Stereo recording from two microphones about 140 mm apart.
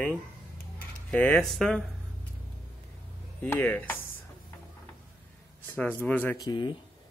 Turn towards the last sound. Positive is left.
turn(degrees=30)  # may be behind; listen again after turning